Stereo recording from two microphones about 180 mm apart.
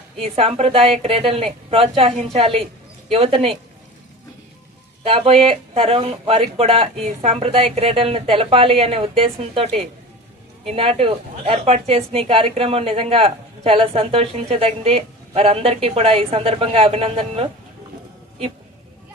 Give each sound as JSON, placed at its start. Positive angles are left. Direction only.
{"t": 0.2, "sound": "a woman's voice", "side_deg": -35}
{"t": 5.0, "sound": "a woman's voice", "side_deg": -30}